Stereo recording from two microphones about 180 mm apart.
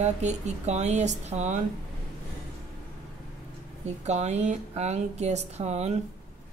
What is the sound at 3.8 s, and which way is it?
A woman's voice, 40° right (ahead or behind).